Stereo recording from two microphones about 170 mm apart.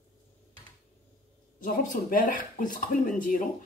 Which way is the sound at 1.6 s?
55° left (ahead or behind).